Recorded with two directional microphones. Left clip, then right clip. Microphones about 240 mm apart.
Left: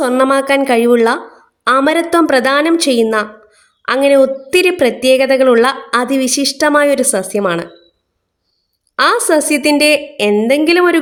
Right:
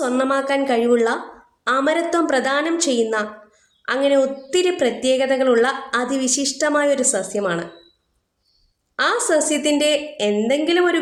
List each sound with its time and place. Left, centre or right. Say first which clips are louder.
0.0 s a woman's voice: left 8 dB; left
9.0 s a woman's voice: left 7 dB; left